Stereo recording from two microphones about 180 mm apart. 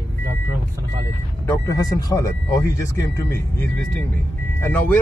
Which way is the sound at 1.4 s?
15° left (ahead or behind).